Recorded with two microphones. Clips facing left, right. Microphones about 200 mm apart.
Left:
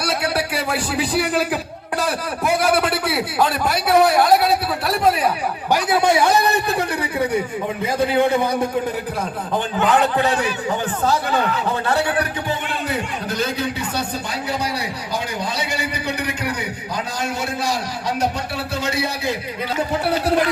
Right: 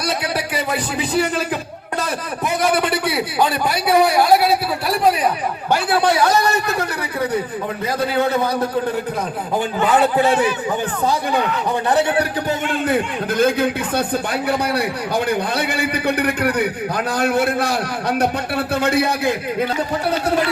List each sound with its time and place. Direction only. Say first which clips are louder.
0.3 s a man's voice: even; centre (ahead or behind)
2.5 s a man's voice: even; 5° left (ahead or behind)
5.9 s a man's voice: even; 20° left (ahead or behind)
8.0 s a man's voice: left 1 dB; 15° left (ahead or behind)
9.8 s a man's voice: right 1 dB; centre (ahead or behind)
11.9 s a man's voice: right 4 dB; 20° right (ahead or behind)
12.5 s a man's voice: right 5 dB; 50° right (ahead or behind)